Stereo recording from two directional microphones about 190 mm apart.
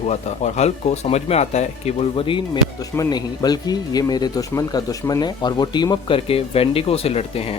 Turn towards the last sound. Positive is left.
turn(degrees=30)  # may be behind; listen again after turning